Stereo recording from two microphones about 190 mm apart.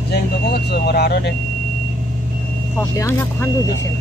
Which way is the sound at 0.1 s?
60° left (ahead or behind).